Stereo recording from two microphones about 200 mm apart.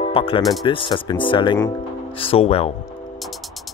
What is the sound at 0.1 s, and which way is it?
Speech, 25° left (ahead or behind).